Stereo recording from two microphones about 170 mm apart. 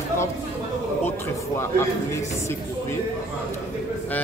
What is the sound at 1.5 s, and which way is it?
Speech, 15° left (ahead or behind).